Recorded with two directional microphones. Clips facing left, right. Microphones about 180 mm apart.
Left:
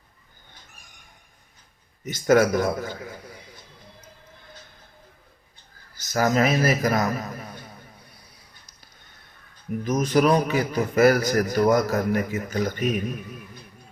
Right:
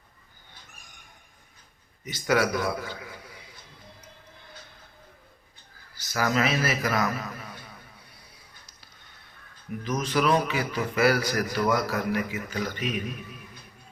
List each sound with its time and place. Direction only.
2.0 s a man's voice: 45° left (ahead or behind)
6.0 s a man's voice: 45° left (ahead or behind)
9.8 s a man's voice: 45° left (ahead or behind)